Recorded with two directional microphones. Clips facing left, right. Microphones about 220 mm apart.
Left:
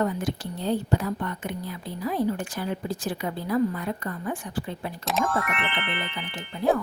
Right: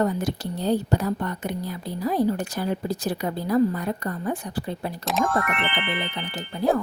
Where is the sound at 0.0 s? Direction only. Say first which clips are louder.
Right 3 dB; 40° right (ahead or behind).